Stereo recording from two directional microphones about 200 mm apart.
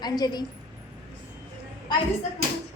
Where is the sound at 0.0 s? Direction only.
20° left (ahead or behind).